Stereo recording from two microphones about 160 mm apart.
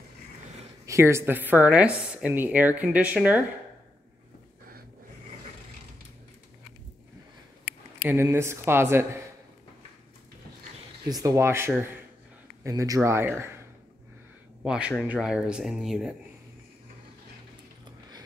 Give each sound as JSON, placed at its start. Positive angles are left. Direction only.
{"t": 0.8, "sound": "speech", "side_deg": -15}
{"t": 8.0, "sound": "speech", "side_deg": -15}
{"t": 11.1, "sound": "speech", "side_deg": -20}
{"t": 14.6, "sound": "speech", "side_deg": -5}